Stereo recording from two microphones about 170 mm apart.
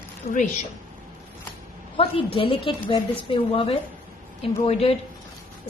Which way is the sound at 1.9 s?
35° left (ahead or behind).